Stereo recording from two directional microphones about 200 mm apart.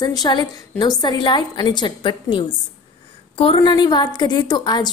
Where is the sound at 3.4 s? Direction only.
25° left (ahead or behind).